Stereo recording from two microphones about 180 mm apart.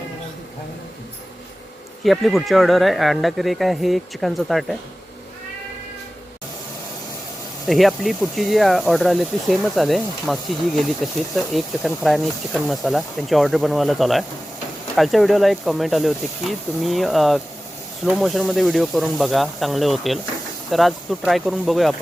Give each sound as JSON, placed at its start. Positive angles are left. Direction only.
{"t": 2.0, "sound": "speech", "side_deg": 0}
{"t": 7.7, "sound": "speech", "side_deg": 0}